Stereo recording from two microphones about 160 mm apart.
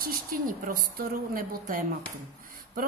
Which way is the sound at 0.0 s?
65° right (ahead or behind).